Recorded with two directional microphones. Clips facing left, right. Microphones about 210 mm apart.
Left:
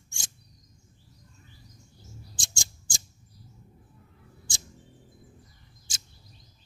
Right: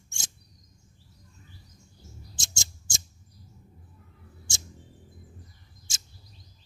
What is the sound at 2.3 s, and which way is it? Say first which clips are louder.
Scissors: right 2 dB; 25° right (ahead or behind).